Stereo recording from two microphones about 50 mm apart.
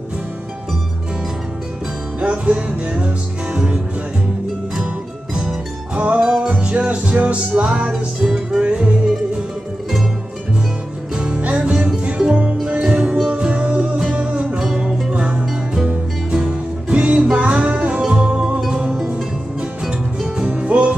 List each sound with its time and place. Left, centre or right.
2.1 s music: right
5.9 s music: right
7.9 s music: centre
11.1 s music: right
19.9 s music: centre